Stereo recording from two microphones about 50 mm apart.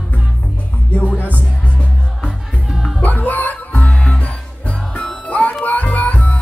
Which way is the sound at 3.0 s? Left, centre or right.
Left.